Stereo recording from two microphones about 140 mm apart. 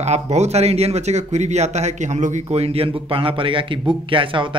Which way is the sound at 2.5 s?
45° right (ahead or behind).